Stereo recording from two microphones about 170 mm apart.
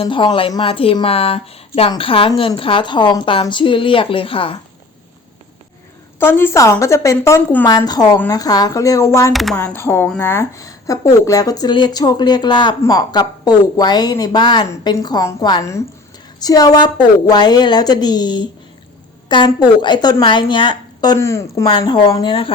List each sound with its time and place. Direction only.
0.0 s speech: 30° left (ahead or behind)
6.1 s a woman's voice: 15° left (ahead or behind)
9.3 s speech: centre (ahead or behind)
9.6 s a woman's voice: 15° left (ahead or behind); by 22.5 s 30° left (ahead or behind)